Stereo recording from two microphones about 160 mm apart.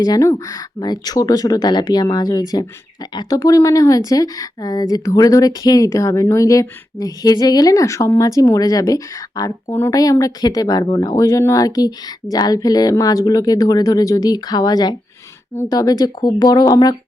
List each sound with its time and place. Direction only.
0.0 s a woman's voice: 20° left (ahead or behind)